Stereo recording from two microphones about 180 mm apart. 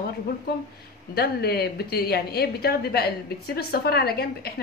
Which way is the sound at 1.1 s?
60° left (ahead or behind).